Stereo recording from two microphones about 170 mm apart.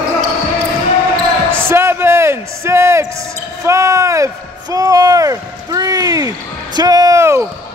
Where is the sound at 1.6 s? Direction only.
15° right (ahead or behind).